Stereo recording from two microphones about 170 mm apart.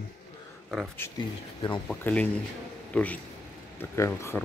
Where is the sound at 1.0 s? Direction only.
15° left (ahead or behind).